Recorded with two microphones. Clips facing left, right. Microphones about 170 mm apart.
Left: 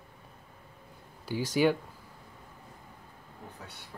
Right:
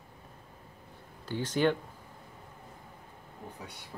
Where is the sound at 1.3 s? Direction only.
10° left (ahead or behind).